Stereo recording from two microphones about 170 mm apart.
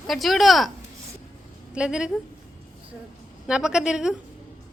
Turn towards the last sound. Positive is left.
turn(degrees=-5)  # may be behind; listen again after turning